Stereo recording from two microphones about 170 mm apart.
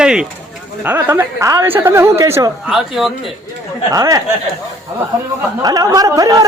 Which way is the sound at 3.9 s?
20° right (ahead or behind).